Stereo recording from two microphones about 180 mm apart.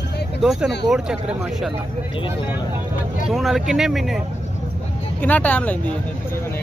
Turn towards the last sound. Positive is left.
turn(degrees=10)  # may be behind; listen again after turning